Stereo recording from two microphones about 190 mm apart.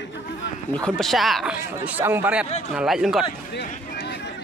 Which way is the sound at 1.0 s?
Centre (ahead or behind).